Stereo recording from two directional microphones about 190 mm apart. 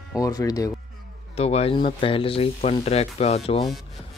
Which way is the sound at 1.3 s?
35° left (ahead or behind).